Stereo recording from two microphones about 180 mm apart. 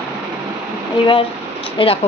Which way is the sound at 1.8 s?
30° left (ahead or behind).